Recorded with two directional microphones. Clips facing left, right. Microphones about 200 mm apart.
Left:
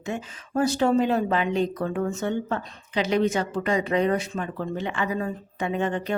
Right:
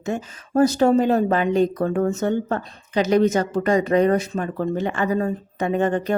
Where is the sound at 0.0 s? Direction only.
40° right (ahead or behind).